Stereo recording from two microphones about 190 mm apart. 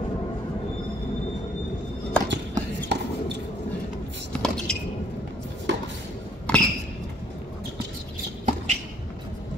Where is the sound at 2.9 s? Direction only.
65° right (ahead or behind).